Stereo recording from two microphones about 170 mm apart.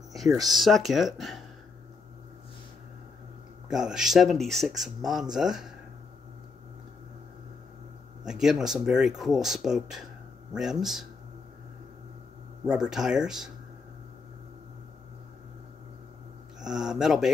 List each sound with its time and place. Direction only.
0.5 s speech: centre (ahead or behind)
3.6 s speech: 5° right (ahead or behind)
8.3 s speech: centre (ahead or behind)
12.6 s speech: 5° right (ahead or behind)
16.6 s speech: 5° right (ahead or behind)